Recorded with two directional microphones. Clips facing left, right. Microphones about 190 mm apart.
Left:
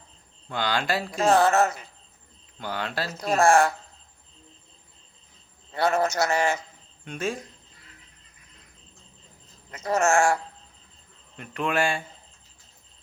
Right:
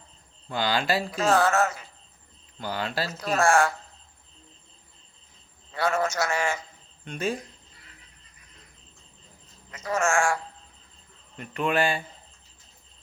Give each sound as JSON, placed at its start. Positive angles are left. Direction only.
{"t": 0.4, "sound": "speech", "side_deg": -5}
{"t": 1.1, "sound": "speech", "side_deg": 35}
{"t": 2.6, "sound": "speech", "side_deg": 0}
{"t": 3.2, "sound": "speech", "side_deg": 35}
{"t": 5.7, "sound": "speech", "side_deg": 35}
{"t": 7.0, "sound": "speech", "side_deg": 0}
{"t": 9.7, "sound": "speech", "side_deg": 35}
{"t": 11.3, "sound": "speech", "side_deg": 0}